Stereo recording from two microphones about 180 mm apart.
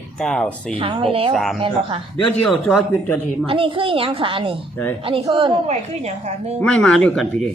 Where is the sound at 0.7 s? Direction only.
30° right (ahead or behind).